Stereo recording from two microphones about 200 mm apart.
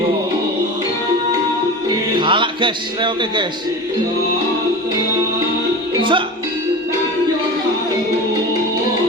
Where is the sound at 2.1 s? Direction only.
25° right (ahead or behind).